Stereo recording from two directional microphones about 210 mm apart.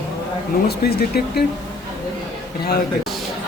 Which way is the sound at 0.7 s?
50° left (ahead or behind).